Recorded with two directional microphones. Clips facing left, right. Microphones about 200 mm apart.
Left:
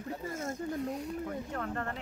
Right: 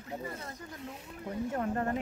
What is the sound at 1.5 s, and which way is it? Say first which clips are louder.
Speech: right 8 dB; 20° right (ahead or behind).